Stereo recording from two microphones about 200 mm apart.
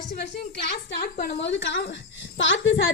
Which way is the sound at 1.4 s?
60° left (ahead or behind).